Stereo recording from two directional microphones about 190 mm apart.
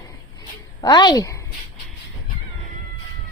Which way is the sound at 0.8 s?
20° left (ahead or behind).